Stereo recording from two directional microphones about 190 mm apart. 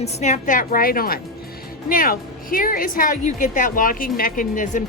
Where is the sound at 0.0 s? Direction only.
40° left (ahead or behind).